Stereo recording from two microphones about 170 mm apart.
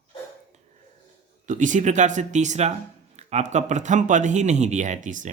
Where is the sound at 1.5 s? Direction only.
50° right (ahead or behind).